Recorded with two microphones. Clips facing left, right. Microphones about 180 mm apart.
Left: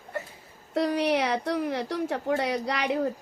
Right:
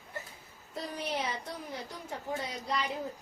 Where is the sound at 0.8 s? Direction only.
75° left (ahead or behind).